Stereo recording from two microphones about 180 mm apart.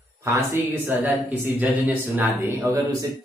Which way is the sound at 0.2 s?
15° right (ahead or behind).